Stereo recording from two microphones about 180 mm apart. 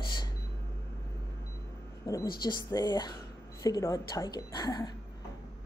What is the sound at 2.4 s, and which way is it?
Speech, 25° left (ahead or behind).